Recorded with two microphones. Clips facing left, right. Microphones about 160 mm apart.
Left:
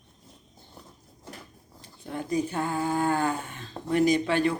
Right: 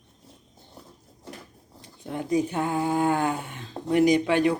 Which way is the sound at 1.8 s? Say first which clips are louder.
Right 2 dB; 20° right (ahead or behind).